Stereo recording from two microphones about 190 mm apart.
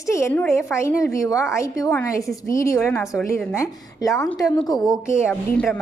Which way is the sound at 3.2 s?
15° left (ahead or behind).